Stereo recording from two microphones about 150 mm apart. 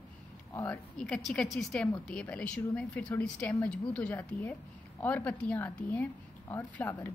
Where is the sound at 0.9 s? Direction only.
5° left (ahead or behind).